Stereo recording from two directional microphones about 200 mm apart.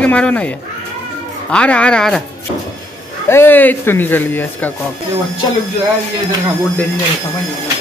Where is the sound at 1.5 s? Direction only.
5° left (ahead or behind).